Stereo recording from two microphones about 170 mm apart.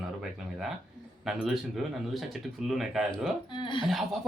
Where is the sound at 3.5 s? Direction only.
30° left (ahead or behind).